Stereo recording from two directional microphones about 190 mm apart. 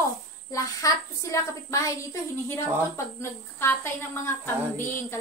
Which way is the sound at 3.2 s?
15° left (ahead or behind).